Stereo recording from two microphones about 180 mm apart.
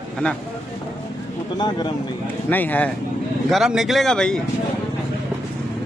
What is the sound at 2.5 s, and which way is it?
Speech, 10° left (ahead or behind).